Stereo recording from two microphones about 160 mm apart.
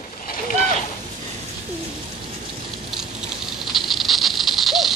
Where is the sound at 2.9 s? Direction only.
5° right (ahead or behind).